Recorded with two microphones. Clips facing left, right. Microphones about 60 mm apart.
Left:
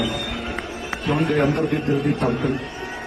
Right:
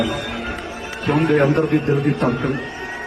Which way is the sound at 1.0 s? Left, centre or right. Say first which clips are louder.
Right 4 dB; right.